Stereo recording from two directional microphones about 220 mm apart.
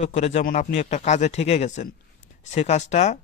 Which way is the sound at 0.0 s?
30° left (ahead or behind).